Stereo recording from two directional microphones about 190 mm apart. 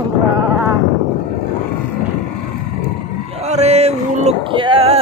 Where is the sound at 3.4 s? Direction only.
35° right (ahead or behind).